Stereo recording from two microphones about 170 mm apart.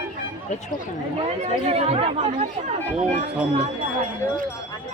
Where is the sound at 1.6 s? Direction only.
40° right (ahead or behind).